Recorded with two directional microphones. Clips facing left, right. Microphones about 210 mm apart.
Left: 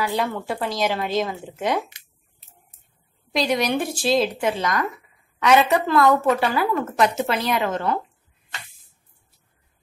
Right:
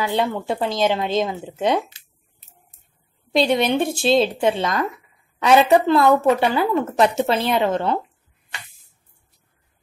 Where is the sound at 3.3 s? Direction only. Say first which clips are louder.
Right 4 dB; 25° right (ahead or behind).